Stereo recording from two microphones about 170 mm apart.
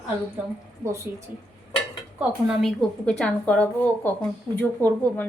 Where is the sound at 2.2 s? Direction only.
5° right (ahead or behind).